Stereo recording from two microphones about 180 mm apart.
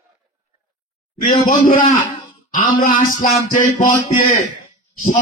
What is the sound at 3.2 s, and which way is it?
Music, 50° left (ahead or behind).